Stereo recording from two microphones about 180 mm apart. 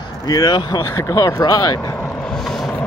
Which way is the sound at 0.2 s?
20° left (ahead or behind).